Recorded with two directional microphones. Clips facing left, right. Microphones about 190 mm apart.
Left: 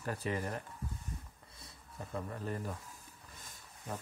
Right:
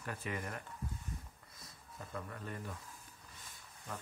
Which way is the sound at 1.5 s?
30° left (ahead or behind).